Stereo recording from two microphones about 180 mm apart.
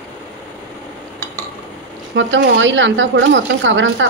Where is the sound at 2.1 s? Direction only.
80° right.